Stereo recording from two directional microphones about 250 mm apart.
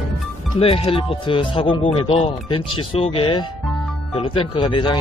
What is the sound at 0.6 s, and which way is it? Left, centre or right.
Speech, left.